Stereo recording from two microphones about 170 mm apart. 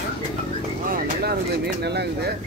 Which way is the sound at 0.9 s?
65° right (ahead or behind).